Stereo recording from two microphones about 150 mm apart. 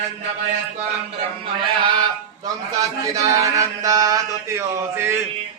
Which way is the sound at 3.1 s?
20° right (ahead or behind).